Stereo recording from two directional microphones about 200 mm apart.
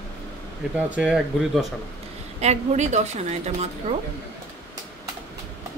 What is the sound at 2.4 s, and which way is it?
A woman's voice, 35° right (ahead or behind).